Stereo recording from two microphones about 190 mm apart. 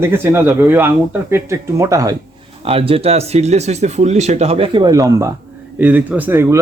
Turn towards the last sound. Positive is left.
turn(degrees=-10)  # may be behind; listen again after turning